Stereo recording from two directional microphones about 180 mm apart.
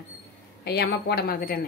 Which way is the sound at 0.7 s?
65° left (ahead or behind).